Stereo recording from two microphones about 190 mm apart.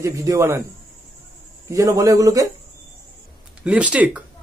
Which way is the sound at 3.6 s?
5° right (ahead or behind).